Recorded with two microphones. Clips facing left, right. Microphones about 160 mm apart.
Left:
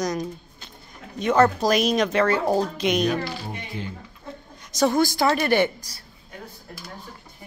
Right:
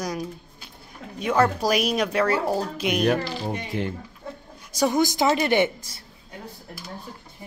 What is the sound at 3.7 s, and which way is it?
Speech, 70° right (ahead or behind).